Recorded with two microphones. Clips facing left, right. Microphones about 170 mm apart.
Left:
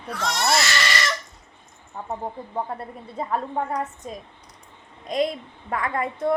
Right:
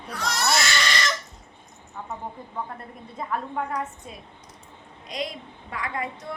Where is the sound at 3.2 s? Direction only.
30° left (ahead or behind).